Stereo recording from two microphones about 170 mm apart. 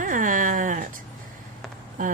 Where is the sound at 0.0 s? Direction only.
50° right (ahead or behind).